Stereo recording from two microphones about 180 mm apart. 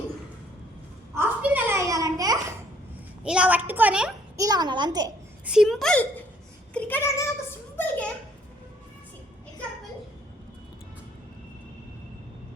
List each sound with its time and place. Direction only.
1.1 s babbling: 10° right (ahead or behind)
3.2 s a woman's voice: 5° right (ahead or behind)
4.4 s a child's voice: 20° right (ahead or behind)
5.5 s a woman's voice: centre (ahead or behind)
7.8 s a sound: 5° left (ahead or behind)